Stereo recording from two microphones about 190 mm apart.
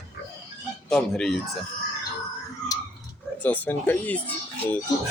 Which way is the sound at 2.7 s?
20° left (ahead or behind).